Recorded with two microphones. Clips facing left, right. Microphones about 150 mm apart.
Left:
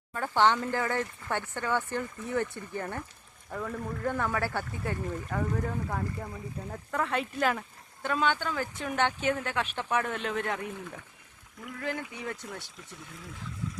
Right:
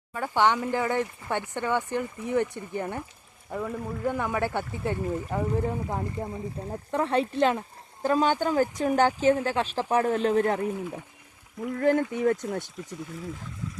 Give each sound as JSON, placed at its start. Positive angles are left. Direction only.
{"t": 0.1, "sound": "speech", "side_deg": -10}